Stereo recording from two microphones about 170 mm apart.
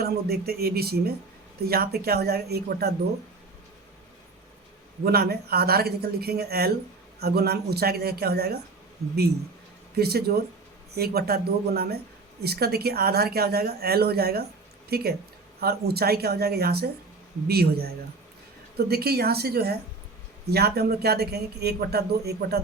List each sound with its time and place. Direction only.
0.0 s speech: 65° right (ahead or behind)
5.0 s speech: 65° right (ahead or behind)
10.0 s speech: 65° right (ahead or behind)